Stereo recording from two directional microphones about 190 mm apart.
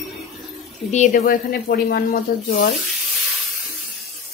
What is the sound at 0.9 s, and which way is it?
Speech, 45° left (ahead or behind).